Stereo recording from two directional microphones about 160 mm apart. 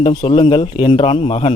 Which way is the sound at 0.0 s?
35° left (ahead or behind).